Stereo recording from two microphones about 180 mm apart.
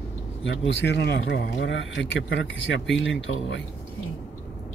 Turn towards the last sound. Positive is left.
turn(degrees=90)